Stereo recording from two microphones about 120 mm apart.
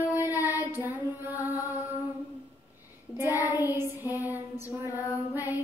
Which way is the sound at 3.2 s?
15° right (ahead or behind).